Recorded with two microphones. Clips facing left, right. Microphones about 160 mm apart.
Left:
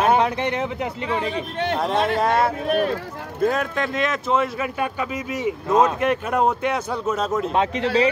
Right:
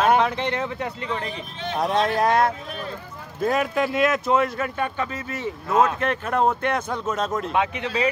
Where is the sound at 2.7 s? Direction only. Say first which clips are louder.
Left 13 dB; 75° left (ahead or behind).